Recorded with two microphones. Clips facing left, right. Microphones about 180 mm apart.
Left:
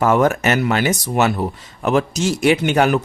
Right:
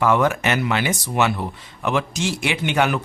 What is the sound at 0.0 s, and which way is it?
Speech, 45° left (ahead or behind).